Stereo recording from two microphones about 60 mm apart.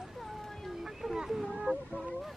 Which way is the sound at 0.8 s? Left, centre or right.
Centre.